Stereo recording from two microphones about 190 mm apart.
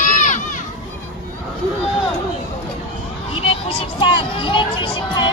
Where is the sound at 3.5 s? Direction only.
30° left (ahead or behind).